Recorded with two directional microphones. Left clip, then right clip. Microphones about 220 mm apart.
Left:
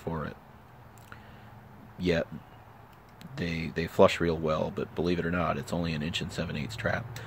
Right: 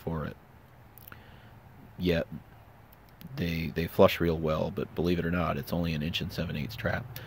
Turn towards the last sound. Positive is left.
turn(degrees=-10)  # may be behind; listen again after turning